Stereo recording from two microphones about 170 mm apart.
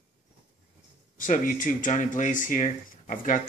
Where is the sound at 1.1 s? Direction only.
50° left (ahead or behind).